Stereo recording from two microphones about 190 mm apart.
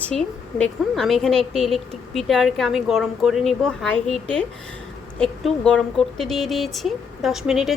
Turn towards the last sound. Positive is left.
turn(degrees=0)  # may be behind; listen again after turning